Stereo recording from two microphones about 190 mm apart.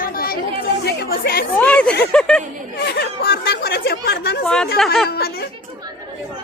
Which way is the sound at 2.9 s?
55° left (ahead or behind).